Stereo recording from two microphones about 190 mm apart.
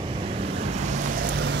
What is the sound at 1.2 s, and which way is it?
Vehicle, 65° right (ahead or behind).